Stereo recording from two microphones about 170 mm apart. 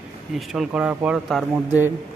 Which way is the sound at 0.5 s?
5° right (ahead or behind).